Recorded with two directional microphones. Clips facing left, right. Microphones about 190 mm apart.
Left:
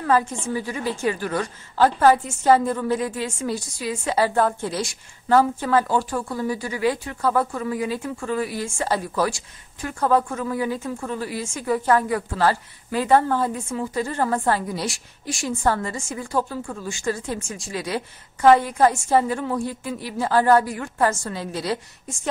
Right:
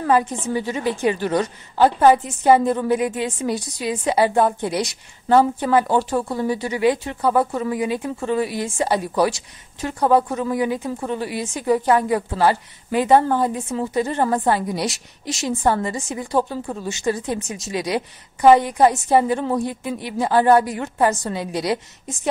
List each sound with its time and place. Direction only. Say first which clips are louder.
0.0 s speech: right 2 dB; 20° right (ahead or behind)